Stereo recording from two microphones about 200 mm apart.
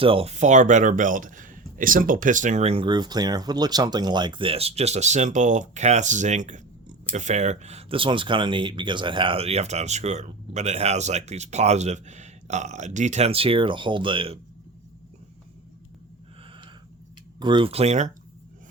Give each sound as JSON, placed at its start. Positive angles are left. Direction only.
{"t": 0.0, "sound": "speech", "side_deg": -30}
{"t": 17.4, "sound": "speech", "side_deg": -25}